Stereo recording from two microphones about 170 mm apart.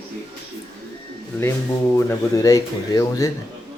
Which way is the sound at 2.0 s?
20° left (ahead or behind).